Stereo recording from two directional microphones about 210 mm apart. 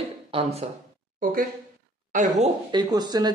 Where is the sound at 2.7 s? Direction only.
20° right (ahead or behind).